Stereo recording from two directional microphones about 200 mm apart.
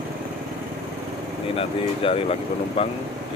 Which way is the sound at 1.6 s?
30° left (ahead or behind).